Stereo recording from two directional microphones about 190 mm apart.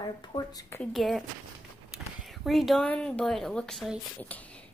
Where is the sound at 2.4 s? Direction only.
Centre (ahead or behind).